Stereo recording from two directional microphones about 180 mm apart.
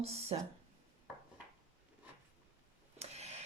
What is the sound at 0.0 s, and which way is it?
Speech, 35° right (ahead or behind).